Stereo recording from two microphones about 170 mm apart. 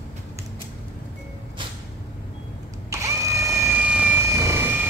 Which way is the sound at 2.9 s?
20° right (ahead or behind).